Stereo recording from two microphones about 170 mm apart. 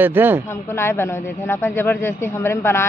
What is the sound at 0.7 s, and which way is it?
A man's voice, 15° left (ahead or behind).